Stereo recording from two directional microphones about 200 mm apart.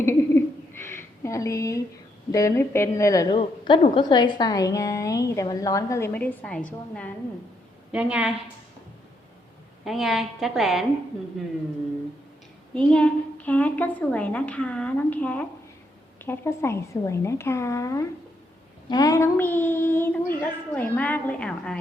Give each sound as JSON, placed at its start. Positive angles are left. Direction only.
{"t": 0.0, "sound": "a sound", "side_deg": 10}
{"t": 2.3, "sound": "a woman's voice", "side_deg": 15}
{"t": 7.9, "sound": "a woman's voice", "side_deg": -5}
{"t": 9.8, "sound": "a woman's voice", "side_deg": 0}
{"t": 12.7, "sound": "a woman's voice", "side_deg": 5}